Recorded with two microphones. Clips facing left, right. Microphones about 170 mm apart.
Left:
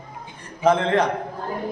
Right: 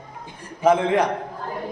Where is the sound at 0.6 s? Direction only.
10° right (ahead or behind).